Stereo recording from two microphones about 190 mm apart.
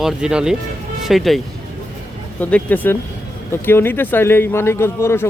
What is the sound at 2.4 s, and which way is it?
Speech, 10° left (ahead or behind).